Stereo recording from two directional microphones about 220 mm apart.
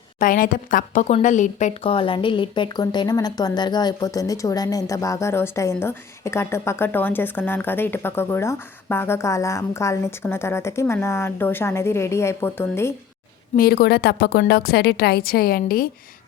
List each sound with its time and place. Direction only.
0.2 s speech: 40° left (ahead or behind); by 12.9 s 10° left (ahead or behind)
13.6 s a woman's voice: 45° left (ahead or behind)